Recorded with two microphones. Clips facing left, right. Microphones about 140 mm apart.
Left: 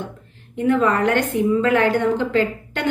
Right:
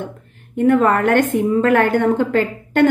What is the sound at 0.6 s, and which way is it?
A woman's voice, 50° right (ahead or behind).